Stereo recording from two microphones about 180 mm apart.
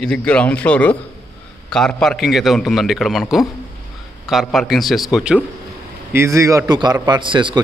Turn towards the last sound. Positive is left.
turn(degrees=-25)  # may be behind; listen again after turning